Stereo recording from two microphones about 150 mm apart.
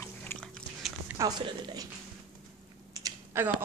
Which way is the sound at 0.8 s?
Centre (ahead or behind).